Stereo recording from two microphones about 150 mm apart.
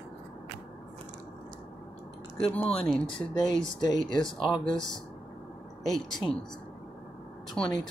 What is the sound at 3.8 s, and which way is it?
Speech, 30° left (ahead or behind).